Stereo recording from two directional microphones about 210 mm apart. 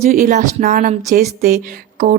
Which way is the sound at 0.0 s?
40° right (ahead or behind).